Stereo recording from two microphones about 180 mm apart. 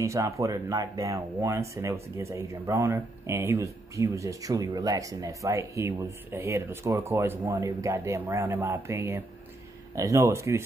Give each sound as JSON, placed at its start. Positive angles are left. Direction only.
{"t": 0.0, "sound": "speech", "side_deg": -15}